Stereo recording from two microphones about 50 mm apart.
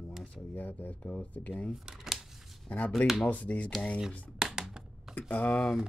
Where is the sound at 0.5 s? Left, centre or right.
Left.